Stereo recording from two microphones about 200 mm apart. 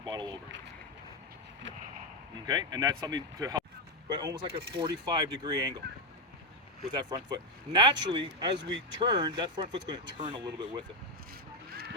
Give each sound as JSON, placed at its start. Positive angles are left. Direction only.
{"t": 0.0, "sound": "a sound", "side_deg": -20}
{"t": 2.5, "sound": "speech", "side_deg": -20}
{"t": 6.9, "sound": "speech", "side_deg": -20}
{"t": 11.7, "sound": "vehicle", "side_deg": -50}